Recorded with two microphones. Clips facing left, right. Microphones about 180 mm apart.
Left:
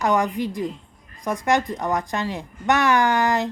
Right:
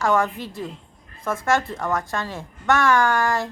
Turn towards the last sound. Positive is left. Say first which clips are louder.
# left 1 dB
turn(degrees=20)  # may be behind; listen again after turning